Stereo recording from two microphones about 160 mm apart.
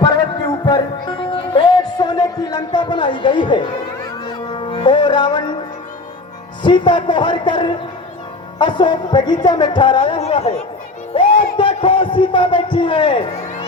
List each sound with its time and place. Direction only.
0.0 s music: 25° left (ahead or behind)
6.6 s speech: 30° left (ahead or behind)
10.2 s speech: 45° left (ahead or behind)
11.5 s a man's voice: 30° left (ahead or behind)